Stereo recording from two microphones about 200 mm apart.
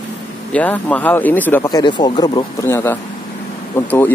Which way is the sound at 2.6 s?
10° left (ahead or behind).